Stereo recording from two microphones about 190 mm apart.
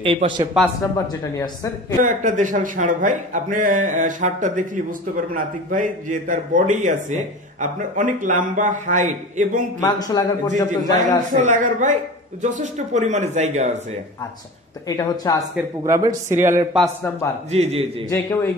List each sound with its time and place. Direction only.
0.0 s a man's voice: 30° right (ahead or behind)
0.9 s speech: 20° left (ahead or behind)
2.0 s a man's voice: 40° right (ahead or behind)
9.8 s a woman's voice: 20° left (ahead or behind)
10.5 s speech: 40° right (ahead or behind)
14.9 s a woman's voice: 20° left (ahead or behind)
15.8 s a man's voice: 20° right (ahead or behind)
17.5 s speech: 30° right (ahead or behind)
18.1 s speech: 10° left (ahead or behind)